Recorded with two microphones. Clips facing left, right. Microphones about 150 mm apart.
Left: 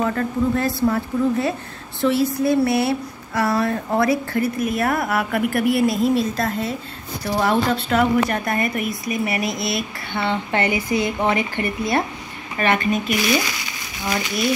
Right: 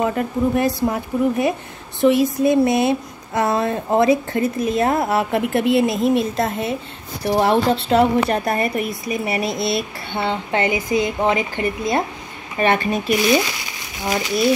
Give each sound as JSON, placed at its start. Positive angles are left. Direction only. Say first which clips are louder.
{"t": 0.0, "sound": "speech", "louder": "right 1 dB", "side_deg": -15}